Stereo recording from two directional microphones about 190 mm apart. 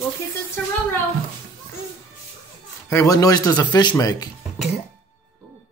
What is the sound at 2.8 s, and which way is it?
Speech, 15° left (ahead or behind).